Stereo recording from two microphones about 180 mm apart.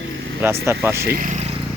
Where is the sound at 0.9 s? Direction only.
55° right (ahead or behind).